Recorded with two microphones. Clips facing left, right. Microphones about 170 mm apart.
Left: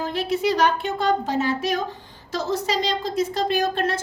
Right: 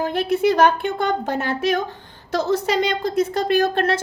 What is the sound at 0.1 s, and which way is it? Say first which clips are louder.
A woman's voice: right 2 dB; 55° right (ahead or behind).